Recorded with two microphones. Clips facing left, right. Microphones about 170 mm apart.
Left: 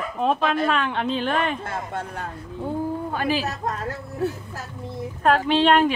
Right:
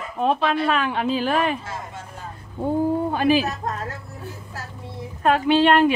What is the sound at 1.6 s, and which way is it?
Speech, 60° left (ahead or behind).